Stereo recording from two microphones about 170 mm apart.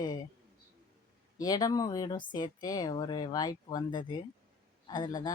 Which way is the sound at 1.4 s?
20° left (ahead or behind).